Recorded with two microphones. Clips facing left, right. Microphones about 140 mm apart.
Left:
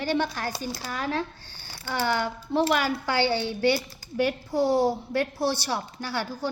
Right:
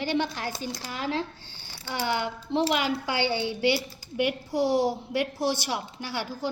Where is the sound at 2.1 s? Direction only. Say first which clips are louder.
Even; 50° left (ahead or behind).